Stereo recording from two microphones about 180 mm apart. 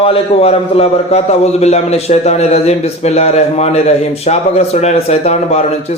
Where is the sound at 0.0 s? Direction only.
30° left (ahead or behind).